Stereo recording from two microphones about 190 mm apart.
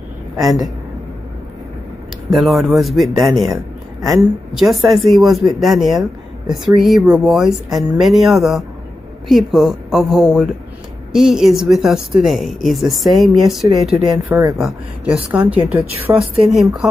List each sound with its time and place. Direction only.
0.4 s speech: centre (ahead or behind)
2.3 s speech: centre (ahead or behind)
4.6 s speech: centre (ahead or behind)
14.1 s a woman's voice: 20° right (ahead or behind)
14.6 s a woman's voice: 5° right (ahead or behind)